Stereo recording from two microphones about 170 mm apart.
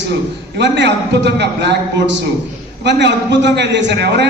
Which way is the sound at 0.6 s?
90° right.